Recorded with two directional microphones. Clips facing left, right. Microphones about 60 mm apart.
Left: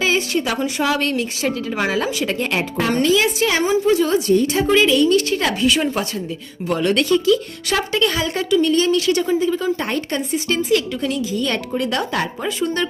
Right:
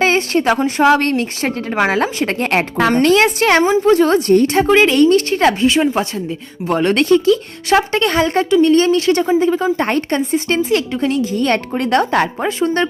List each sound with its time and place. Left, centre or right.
0.0 s a woman's voice: right